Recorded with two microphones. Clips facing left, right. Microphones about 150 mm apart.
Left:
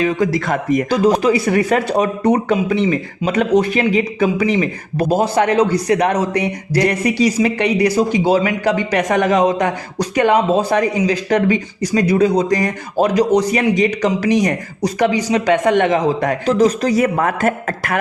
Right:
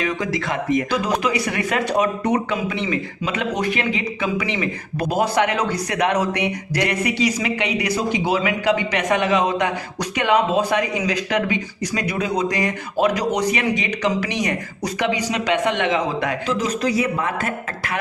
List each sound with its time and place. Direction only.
0.0 s speech: 40° left (ahead or behind)
17.0 s a man's voice: 50° left (ahead or behind)